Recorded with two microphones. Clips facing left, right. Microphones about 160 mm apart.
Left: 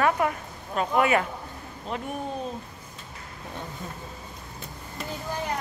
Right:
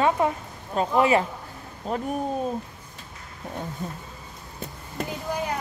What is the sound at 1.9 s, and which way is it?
Speech, 40° right (ahead or behind).